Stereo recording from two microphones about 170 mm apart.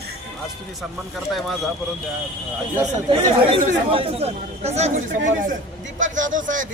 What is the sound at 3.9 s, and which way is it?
Speech, 35° right (ahead or behind).